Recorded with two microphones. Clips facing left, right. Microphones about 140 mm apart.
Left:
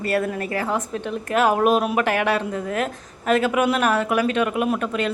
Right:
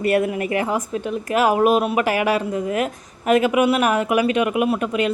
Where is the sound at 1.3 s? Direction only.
5° right (ahead or behind).